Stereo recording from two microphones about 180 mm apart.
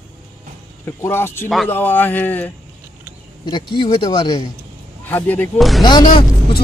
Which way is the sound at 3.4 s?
25° left (ahead or behind).